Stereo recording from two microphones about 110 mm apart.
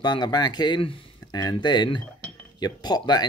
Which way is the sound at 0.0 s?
40° left (ahead or behind).